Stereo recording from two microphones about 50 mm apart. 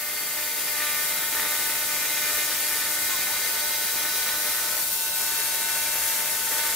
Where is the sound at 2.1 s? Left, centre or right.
Centre.